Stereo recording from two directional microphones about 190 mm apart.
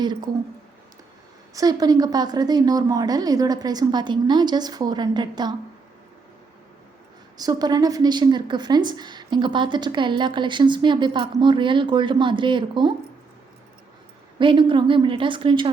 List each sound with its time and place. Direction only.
0.0 s a woman's voice: 20° right (ahead or behind)
1.5 s a woman's voice: 20° right (ahead or behind)
7.3 s a woman's voice: 20° right (ahead or behind)
14.3 s a woman's voice: 25° right (ahead or behind)